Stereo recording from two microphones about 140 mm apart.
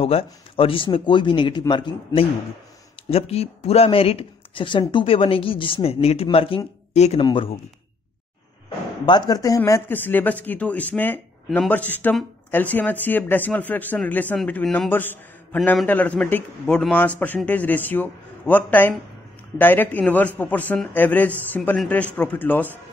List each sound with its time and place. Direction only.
0.0 s speech: 40° left (ahead or behind)
3.1 s speech: 45° left (ahead or behind)
8.6 s speech: 30° left (ahead or behind); by 22.7 s 15° left (ahead or behind)